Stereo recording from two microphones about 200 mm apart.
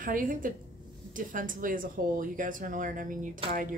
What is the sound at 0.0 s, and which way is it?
Speech, 45° right (ahead or behind).